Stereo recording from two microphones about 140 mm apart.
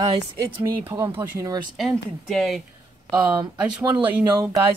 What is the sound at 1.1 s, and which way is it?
Speech, 25° right (ahead or behind).